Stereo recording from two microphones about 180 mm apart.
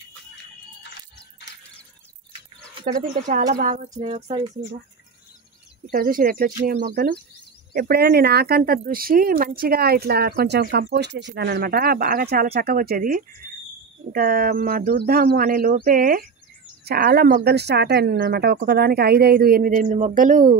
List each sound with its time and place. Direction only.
2.8 s speech: 50° right (ahead or behind)
3.6 s a sound: 45° right (ahead or behind)
5.9 s speech: 50° right (ahead or behind)
6.9 s speech: 55° right (ahead or behind)
13.4 s a sound: 50° right (ahead or behind)
14.1 s speech: 55° right (ahead or behind)